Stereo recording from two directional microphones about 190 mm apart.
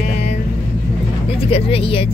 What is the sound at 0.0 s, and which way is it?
Vehicle, 35° left (ahead or behind).